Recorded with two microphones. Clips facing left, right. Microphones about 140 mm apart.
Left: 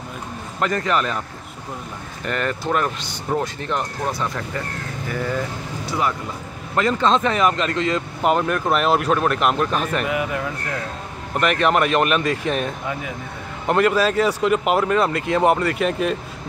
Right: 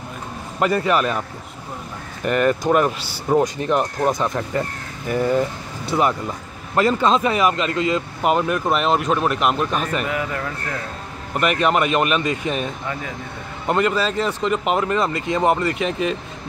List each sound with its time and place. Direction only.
0.6 s speech: 10° right (ahead or behind)
2.2 s speech: 15° right (ahead or behind)
5.9 s speech: 25° right (ahead or behind)
6.9 s speech: 10° right (ahead or behind)
10.0 s speech: 15° left (ahead or behind)
11.3 s speech: 5° right (ahead or behind)